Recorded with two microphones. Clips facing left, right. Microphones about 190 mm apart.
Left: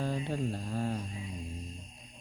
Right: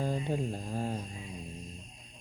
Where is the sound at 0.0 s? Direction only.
15° right (ahead or behind).